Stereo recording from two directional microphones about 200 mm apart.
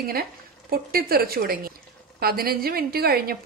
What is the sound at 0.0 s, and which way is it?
A woman's voice, 50° right (ahead or behind).